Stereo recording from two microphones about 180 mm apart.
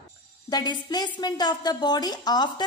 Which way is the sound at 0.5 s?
25° left (ahead or behind).